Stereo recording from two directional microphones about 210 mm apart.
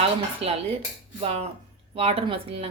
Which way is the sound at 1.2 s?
30° right (ahead or behind).